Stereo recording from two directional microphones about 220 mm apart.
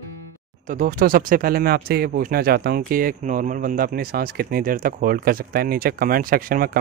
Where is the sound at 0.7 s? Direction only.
35° right (ahead or behind).